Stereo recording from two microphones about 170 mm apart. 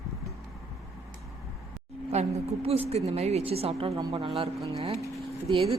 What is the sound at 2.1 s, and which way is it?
A woman's voice, 40° right (ahead or behind).